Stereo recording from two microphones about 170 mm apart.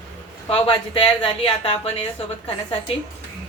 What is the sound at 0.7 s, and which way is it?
Speech, 30° left (ahead or behind).